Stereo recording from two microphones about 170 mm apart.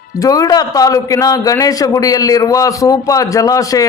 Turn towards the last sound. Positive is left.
turn(degrees=20)  # may be behind; listen again after turning